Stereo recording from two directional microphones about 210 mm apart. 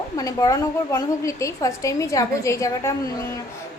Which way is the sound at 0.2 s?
15° left (ahead or behind).